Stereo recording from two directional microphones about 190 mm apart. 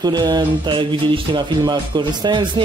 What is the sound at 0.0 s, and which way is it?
Speech, 20° right (ahead or behind).